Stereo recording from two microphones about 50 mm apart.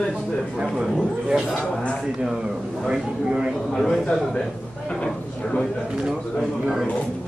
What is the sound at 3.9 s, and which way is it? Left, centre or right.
Speech, centre.